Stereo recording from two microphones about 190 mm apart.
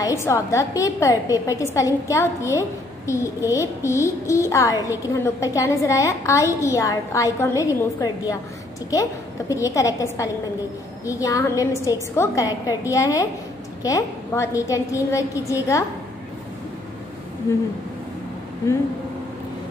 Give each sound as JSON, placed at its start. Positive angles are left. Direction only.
{"t": 0.0, "sound": "a woman's voice", "side_deg": 15}
{"t": 17.5, "sound": "a woman's voice", "side_deg": 15}